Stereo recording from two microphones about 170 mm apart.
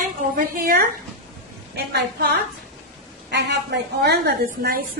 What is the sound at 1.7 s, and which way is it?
A woman's voice, 75° right (ahead or behind).